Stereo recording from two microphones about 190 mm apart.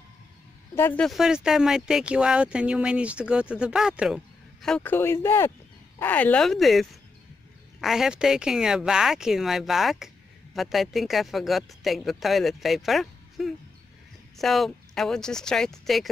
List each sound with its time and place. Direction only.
0.7 s speech: 10° left (ahead or behind)
1.0 s speech: centre (ahead or behind)